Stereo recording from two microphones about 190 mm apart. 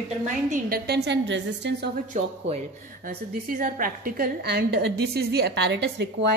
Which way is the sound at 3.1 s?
50° right (ahead or behind).